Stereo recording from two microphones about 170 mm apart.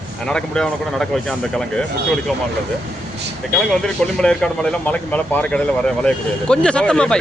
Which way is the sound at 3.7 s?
5° left (ahead or behind).